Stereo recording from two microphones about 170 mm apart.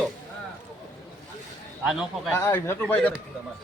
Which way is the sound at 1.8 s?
Centre (ahead or behind).